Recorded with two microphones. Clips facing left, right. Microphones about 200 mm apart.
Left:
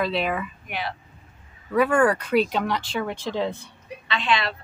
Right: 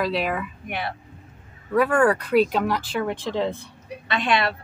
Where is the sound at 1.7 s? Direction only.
5° right (ahead or behind).